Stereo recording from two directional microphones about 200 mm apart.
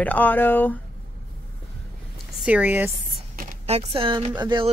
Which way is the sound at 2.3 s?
5° right (ahead or behind).